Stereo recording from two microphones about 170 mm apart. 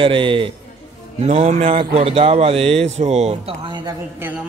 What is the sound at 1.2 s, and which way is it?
Speech, 40° right (ahead or behind).